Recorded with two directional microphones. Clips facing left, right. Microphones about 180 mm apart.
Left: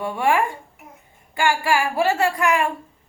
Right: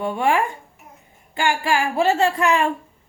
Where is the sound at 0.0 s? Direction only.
25° right (ahead or behind).